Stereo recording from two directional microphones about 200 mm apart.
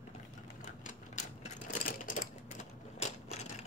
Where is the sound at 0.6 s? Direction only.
40° left (ahead or behind).